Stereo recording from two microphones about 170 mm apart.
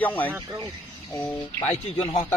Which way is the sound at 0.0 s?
10° left (ahead or behind).